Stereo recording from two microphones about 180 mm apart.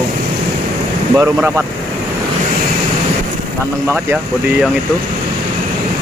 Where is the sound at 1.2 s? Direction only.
15° right (ahead or behind).